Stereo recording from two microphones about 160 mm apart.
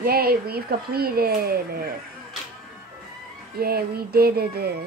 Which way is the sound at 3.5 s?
75° right (ahead or behind).